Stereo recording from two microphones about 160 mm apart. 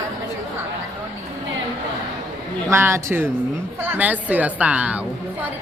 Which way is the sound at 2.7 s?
15° right (ahead or behind).